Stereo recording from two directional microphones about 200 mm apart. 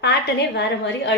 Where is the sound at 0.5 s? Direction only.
60° left (ahead or behind).